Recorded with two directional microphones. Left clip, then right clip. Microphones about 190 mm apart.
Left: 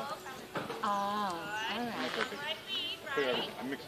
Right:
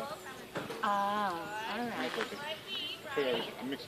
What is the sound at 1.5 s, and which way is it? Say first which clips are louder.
Speech: left 2 dB; 45° right (ahead or behind).